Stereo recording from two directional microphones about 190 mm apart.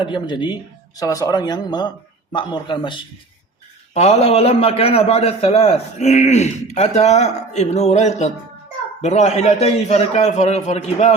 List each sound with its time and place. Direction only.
0.0 s a man's voice: 25° left (ahead or behind)